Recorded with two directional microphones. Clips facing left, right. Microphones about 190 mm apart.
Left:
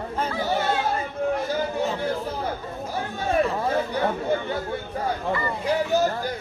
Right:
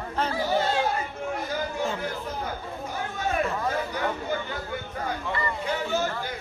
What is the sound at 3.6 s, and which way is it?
Chatter, 30° left (ahead or behind).